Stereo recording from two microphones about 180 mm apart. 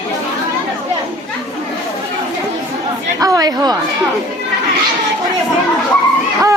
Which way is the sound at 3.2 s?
20° right (ahead or behind).